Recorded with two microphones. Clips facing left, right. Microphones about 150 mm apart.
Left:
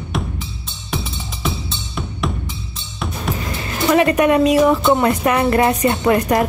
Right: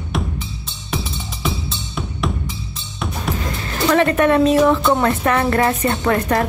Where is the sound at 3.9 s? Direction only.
10° left (ahead or behind).